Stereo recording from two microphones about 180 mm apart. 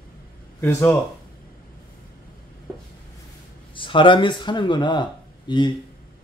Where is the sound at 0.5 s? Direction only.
15° left (ahead or behind).